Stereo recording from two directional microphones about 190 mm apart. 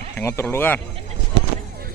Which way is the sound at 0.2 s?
15° left (ahead or behind).